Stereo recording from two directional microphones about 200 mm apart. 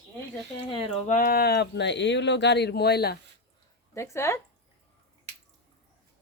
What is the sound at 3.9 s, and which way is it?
Speech, 15° left (ahead or behind).